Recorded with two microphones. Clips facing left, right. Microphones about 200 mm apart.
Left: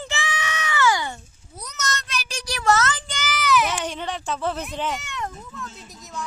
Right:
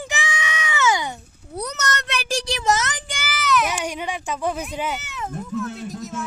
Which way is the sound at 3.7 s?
10° right (ahead or behind).